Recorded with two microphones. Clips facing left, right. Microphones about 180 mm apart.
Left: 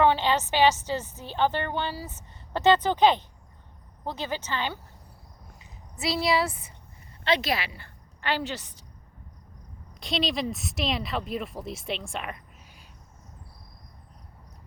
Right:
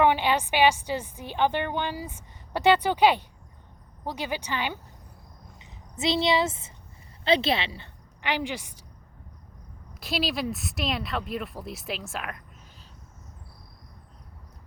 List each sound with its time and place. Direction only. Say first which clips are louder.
0.0 s a woman's voice: even; 15° right (ahead or behind)
8.2 s a woman's voice: even; 15° right (ahead or behind)
10.0 s speech: even; 5° right (ahead or behind)